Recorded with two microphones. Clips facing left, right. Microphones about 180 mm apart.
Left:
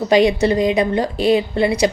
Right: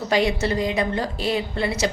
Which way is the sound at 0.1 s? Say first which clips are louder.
Left 7 dB; 15° left (ahead or behind).